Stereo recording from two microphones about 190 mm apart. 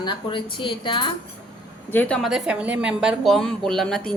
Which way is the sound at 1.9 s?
5° left (ahead or behind).